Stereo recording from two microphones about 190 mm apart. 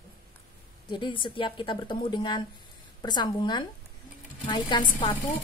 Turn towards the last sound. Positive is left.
turn(degrees=25)  # may be behind; listen again after turning